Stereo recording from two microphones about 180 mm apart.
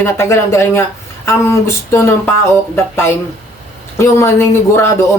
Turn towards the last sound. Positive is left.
turn(degrees=15)  # may be behind; listen again after turning